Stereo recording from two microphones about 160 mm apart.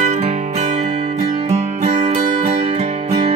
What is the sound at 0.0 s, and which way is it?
Music, 45° right (ahead or behind).